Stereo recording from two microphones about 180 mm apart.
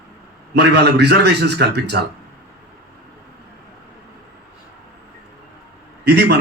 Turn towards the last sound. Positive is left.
turn(degrees=-65)  # may be behind; listen again after turning